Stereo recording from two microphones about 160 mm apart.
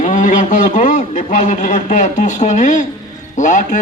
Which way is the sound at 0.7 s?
50° left (ahead or behind).